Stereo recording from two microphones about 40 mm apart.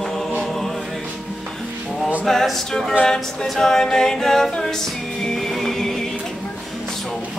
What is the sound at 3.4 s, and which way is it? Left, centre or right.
A capella, centre.